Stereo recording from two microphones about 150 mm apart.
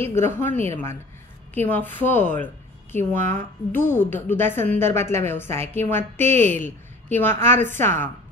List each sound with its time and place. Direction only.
0.1 s a woman's voice: 15° left (ahead or behind)
1.5 s a woman's voice: 10° left (ahead or behind)